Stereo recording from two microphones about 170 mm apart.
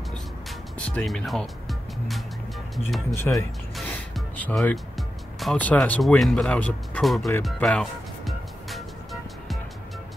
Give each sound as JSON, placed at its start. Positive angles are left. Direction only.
{"t": 0.1, "sound": "music", "side_deg": 5}
{"t": 2.7, "sound": "speech", "side_deg": 0}
{"t": 3.2, "sound": "speech", "side_deg": 20}
{"t": 3.7, "sound": "music", "side_deg": 5}
{"t": 5.4, "sound": "speech", "side_deg": 5}
{"t": 7.4, "sound": "music", "side_deg": 0}